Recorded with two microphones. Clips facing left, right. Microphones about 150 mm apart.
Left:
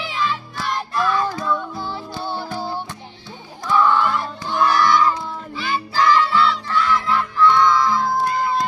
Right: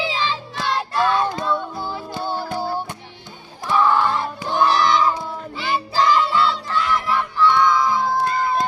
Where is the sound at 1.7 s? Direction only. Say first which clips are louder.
Right 1 dB; 10° right (ahead or behind).